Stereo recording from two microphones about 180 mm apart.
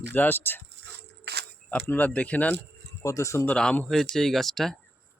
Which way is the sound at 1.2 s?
65° right (ahead or behind).